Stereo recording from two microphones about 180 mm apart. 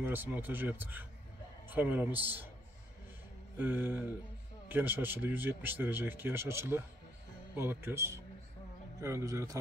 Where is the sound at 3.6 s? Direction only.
10° right (ahead or behind).